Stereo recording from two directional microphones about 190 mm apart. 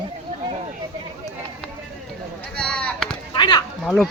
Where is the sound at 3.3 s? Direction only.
25° left (ahead or behind).